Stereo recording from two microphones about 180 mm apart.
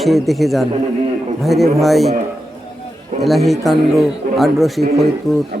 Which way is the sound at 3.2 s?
Centre (ahead or behind).